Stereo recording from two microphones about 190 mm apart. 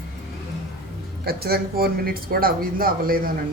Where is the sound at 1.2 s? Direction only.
55° right (ahead or behind).